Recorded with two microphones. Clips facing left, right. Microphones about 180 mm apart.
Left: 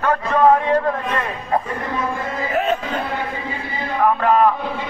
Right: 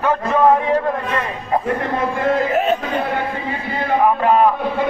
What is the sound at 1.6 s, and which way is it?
Speech, 60° right (ahead or behind).